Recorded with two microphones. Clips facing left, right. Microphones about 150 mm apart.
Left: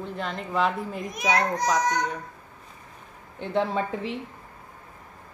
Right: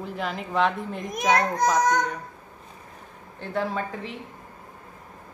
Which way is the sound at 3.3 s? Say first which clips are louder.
Left 2 dB; 25° left (ahead or behind).